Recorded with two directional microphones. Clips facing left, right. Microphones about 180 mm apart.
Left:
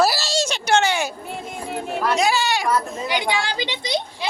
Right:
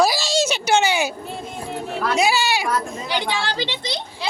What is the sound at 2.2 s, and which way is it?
Speech, 10° right (ahead or behind).